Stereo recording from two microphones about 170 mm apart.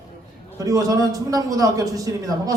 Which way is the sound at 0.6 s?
20° right (ahead or behind).